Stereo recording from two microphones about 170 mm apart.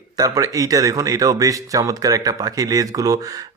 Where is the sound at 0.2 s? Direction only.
20° right (ahead or behind).